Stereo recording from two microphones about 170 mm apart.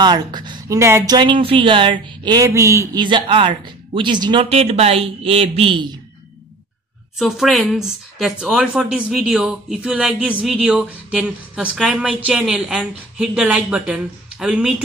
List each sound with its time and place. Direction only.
0.0 s speech: 25° right (ahead or behind)
7.2 s speech: centre (ahead or behind)